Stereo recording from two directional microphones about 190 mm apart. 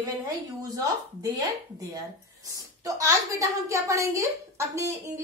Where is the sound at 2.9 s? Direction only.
15° right (ahead or behind).